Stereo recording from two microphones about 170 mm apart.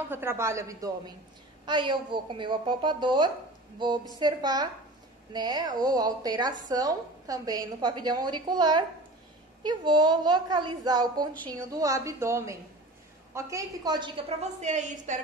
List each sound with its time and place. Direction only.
0.1 s a woman's voice: 15° right (ahead or behind)
14.4 s a woman's voice: 45° right (ahead or behind)